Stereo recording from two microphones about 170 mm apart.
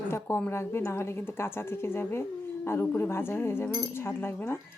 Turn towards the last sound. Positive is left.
turn(degrees=10)  # may be behind; listen again after turning